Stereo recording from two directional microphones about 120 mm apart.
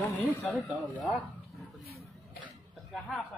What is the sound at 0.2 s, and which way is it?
Speech, 15° left (ahead or behind).